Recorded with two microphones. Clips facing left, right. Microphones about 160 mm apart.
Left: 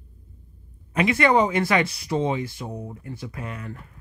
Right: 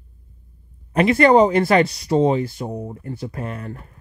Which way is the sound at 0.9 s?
45° right (ahead or behind).